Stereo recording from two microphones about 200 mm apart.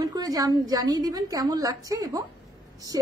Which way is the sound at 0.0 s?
20° right (ahead or behind).